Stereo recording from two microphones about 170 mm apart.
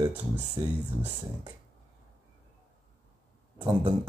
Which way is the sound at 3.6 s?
25° right (ahead or behind).